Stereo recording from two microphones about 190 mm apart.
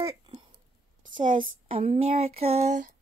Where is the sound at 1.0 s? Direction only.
45° right (ahead or behind).